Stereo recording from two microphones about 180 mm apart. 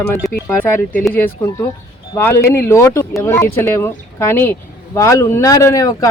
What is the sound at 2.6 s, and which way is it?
A man's voice, 15° left (ahead or behind).